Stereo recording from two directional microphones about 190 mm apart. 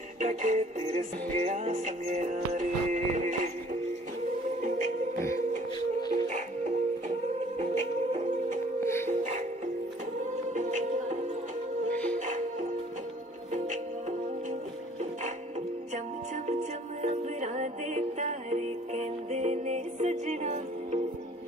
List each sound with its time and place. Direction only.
0.2 s music: 40° right (ahead or behind)
4.6 s music: 40° right (ahead or behind)
6.2 s music: 40° right (ahead or behind)
8.8 s music: 15° left (ahead or behind)
9.1 s music: 40° right (ahead or behind)
10.5 s music: 40° right (ahead or behind)
11.9 s music: 5° left (ahead or behind)
12.3 s music: 40° right (ahead or behind)
16.4 s music: 35° right (ahead or behind)